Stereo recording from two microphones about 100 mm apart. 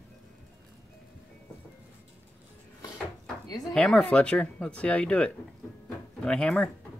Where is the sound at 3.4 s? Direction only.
40° left (ahead or behind).